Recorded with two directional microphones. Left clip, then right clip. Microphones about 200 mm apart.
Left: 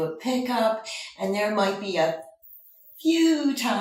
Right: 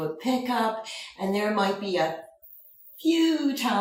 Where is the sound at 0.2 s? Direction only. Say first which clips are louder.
Even; centre (ahead or behind).